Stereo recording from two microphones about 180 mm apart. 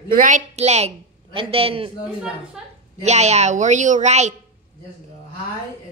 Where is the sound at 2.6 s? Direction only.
5° right (ahead or behind).